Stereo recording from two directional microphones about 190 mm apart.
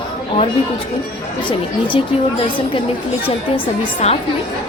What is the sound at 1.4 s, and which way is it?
A woman's voice, 25° left (ahead or behind).